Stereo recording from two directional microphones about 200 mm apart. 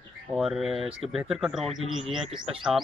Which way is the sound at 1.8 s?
30° right (ahead or behind).